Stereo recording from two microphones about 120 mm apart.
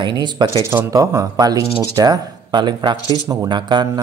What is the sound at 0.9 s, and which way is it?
Speech, 30° right (ahead or behind).